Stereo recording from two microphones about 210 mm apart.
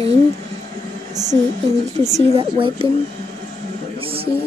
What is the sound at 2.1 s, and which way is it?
Speech, 25° right (ahead or behind).